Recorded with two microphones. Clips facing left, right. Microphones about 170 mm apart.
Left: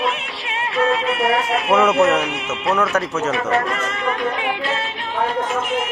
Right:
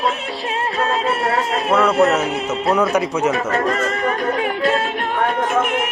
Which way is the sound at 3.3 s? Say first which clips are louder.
Right 1 dB; 40° right (ahead or behind).